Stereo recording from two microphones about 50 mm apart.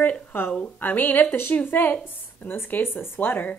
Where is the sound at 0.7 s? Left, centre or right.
Left.